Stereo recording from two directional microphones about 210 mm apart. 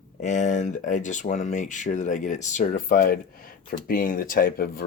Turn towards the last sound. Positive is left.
turn(degrees=45)  # may be behind; listen again after turning